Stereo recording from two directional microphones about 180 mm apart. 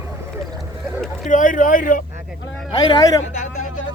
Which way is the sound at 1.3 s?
45° left (ahead or behind).